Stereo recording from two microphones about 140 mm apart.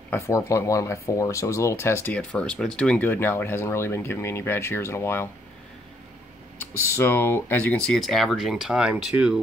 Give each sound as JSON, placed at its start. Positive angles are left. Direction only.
{"t": 0.1, "sound": "speech", "side_deg": 20}
{"t": 6.6, "sound": "speech", "side_deg": 20}